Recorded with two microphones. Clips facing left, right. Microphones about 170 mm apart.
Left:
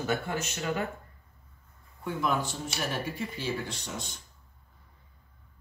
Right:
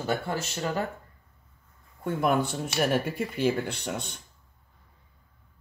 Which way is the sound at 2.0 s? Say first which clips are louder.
Right 5 dB; 55° right (ahead or behind).